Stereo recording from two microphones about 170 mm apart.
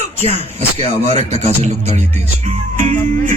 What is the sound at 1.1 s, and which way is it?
Speech, 40° right (ahead or behind).